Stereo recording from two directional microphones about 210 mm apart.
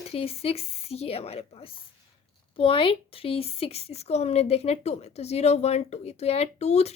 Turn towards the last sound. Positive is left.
turn(degrees=30)  # may be behind; listen again after turning